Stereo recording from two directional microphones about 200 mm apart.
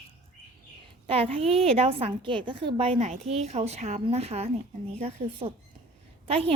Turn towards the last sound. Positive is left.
turn(degrees=-30)  # may be behind; listen again after turning